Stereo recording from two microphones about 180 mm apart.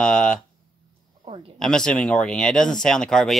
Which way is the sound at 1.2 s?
30° right (ahead or behind).